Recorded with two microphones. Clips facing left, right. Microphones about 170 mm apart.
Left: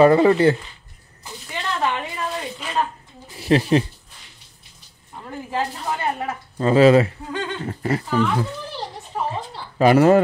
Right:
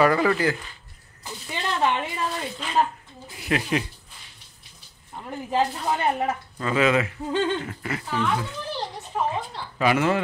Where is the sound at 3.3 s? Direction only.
30° left (ahead or behind).